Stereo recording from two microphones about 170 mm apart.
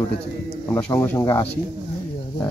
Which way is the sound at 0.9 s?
15° left (ahead or behind).